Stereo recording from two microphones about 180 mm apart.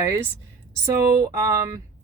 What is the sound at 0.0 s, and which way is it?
Speech, 15° right (ahead or behind).